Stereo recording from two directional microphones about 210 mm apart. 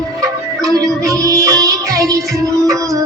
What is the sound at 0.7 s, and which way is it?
Music, 15° right (ahead or behind).